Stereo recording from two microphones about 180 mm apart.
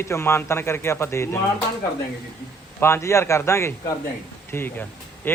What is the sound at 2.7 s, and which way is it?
Speech, 15° left (ahead or behind).